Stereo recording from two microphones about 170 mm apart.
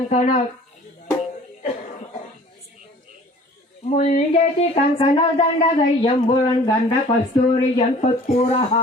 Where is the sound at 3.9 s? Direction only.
45° left (ahead or behind); by 6.7 s 30° left (ahead or behind).